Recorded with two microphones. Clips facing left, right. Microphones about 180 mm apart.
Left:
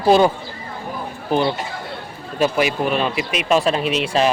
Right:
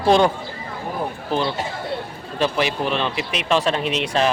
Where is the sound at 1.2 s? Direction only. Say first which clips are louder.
Left 5 dB; 15° left (ahead or behind).